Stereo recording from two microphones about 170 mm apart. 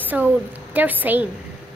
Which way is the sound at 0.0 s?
10° right (ahead or behind).